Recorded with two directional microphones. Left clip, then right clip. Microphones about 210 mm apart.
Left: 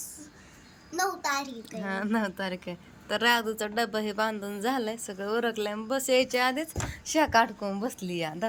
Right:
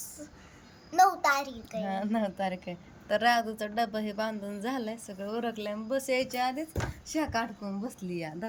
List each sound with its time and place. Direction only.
1.2 s a child's voice: 30° right (ahead or behind)
1.9 s speech: 5° right (ahead or behind)